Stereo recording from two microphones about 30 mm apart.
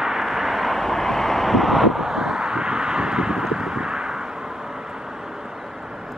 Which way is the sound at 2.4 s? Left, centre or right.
Right.